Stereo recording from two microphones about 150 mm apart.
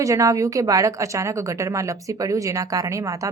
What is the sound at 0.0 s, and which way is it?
A woman's voice, 20° right (ahead or behind).